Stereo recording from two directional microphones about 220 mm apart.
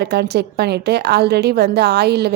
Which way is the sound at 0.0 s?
50° right (ahead or behind).